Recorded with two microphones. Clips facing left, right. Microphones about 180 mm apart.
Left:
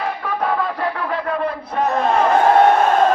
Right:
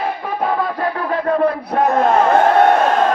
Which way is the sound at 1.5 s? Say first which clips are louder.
Right 5 dB; 65° right (ahead or behind).